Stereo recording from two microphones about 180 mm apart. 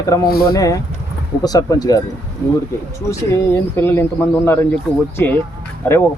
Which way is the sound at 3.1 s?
15° left (ahead or behind).